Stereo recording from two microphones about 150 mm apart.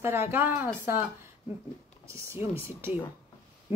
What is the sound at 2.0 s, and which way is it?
Speech, 20° right (ahead or behind).